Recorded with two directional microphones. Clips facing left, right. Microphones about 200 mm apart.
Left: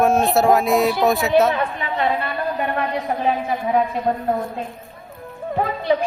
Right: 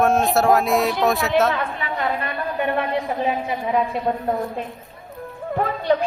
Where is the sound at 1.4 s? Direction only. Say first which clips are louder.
Left 2 dB; 20° left (ahead or behind).